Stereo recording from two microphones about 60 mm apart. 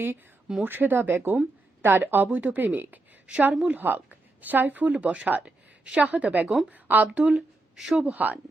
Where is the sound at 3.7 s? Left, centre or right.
Right.